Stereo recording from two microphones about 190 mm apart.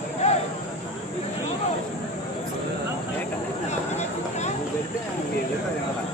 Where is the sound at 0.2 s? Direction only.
35° left (ahead or behind).